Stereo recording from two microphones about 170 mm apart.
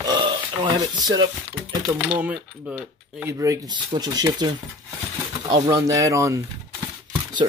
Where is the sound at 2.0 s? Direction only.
10° right (ahead or behind).